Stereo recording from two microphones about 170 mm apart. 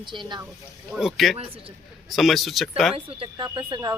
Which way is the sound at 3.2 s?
30° right (ahead or behind).